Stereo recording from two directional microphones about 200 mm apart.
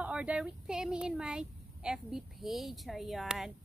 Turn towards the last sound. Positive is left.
turn(degrees=0)  # may be behind; listen again after turning